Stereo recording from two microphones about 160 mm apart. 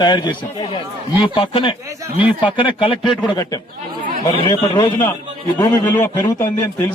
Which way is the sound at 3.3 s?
20° left (ahead or behind).